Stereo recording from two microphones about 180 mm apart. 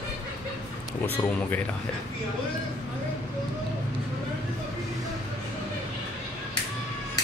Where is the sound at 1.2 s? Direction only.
15° left (ahead or behind).